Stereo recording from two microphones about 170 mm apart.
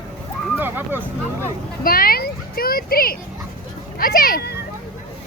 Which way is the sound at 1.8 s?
60° left (ahead or behind).